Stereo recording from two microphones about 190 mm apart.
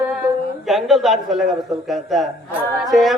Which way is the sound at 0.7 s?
Centre (ahead or behind).